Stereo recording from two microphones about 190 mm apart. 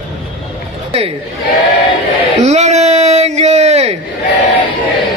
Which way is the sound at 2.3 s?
35° right (ahead or behind).